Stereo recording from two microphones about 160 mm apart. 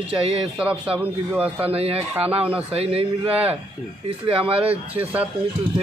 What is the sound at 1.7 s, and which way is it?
Speech, 40° right (ahead or behind).